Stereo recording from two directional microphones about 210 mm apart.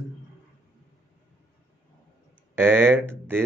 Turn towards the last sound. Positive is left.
turn(degrees=-10)  # may be behind; listen again after turning